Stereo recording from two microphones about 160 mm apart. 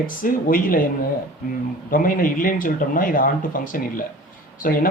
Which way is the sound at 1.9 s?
60° left (ahead or behind).